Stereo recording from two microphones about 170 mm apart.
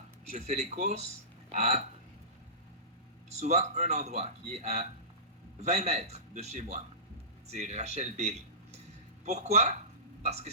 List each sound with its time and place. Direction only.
0.3 s speech: 40° right (ahead or behind)
3.2 s a man's voice: 40° right (ahead or behind)